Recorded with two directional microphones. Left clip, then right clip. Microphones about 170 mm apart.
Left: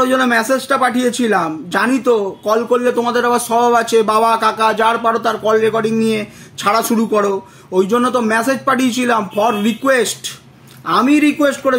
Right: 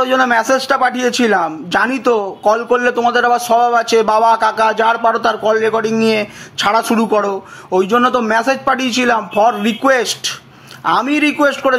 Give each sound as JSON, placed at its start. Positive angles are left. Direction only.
{"t": 0.0, "sound": "speech", "side_deg": 25}